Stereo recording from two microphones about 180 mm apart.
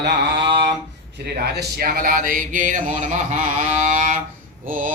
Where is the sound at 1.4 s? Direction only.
55° right (ahead or behind).